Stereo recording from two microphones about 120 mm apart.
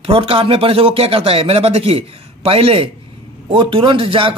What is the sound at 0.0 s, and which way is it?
Speech, 55° right (ahead or behind).